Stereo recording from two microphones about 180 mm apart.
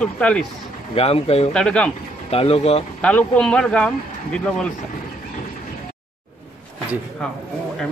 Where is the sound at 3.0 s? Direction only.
5° left (ahead or behind).